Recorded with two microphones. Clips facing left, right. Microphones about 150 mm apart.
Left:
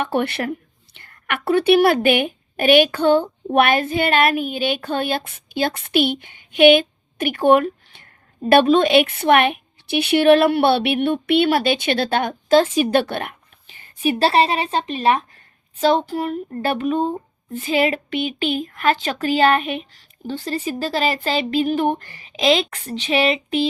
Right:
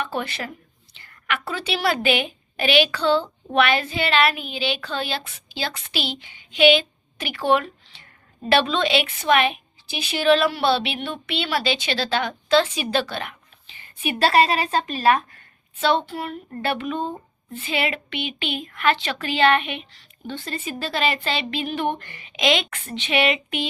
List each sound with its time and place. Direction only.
0.0 s a woman's voice: 60° left (ahead or behind)
14.0 s a woman's voice: 35° left (ahead or behind)
15.8 s a woman's voice: 40° left (ahead or behind)